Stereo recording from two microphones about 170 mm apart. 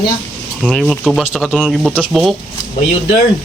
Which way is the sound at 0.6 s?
Centre (ahead or behind).